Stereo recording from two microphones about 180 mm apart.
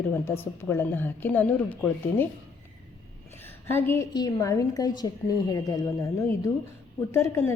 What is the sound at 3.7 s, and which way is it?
A woman's voice, 10° left (ahead or behind).